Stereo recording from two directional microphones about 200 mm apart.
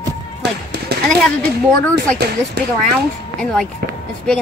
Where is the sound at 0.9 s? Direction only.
55° right (ahead or behind).